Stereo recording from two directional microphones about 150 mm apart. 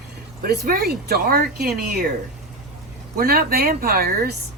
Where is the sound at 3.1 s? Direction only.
90° right.